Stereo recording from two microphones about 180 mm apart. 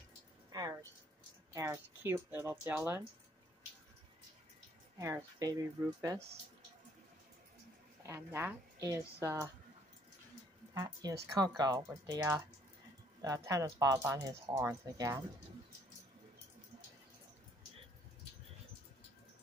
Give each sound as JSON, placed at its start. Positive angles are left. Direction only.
{"t": 0.5, "sound": "a sound", "side_deg": -20}
{"t": 1.5, "sound": "speech", "side_deg": -15}
{"t": 4.9, "sound": "speech", "side_deg": -15}
{"t": 8.0, "sound": "speech", "side_deg": -15}
{"t": 10.7, "sound": "speech", "side_deg": -20}
{"t": 13.5, "sound": "speech", "side_deg": -20}